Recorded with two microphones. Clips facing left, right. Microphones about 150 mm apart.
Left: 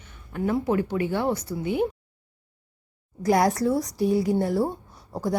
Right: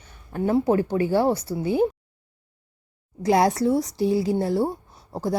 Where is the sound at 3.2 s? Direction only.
25° right (ahead or behind).